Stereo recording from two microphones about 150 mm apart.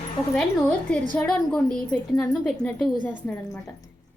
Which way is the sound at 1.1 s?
5° left (ahead or behind).